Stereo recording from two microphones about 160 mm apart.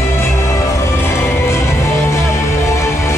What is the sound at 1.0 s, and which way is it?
Music, 15° left (ahead or behind).